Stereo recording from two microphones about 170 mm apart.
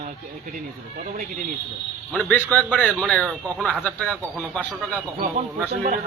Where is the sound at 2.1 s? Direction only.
5° left (ahead or behind).